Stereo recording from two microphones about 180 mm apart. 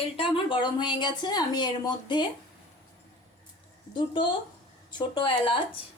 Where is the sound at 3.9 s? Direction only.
25° left (ahead or behind).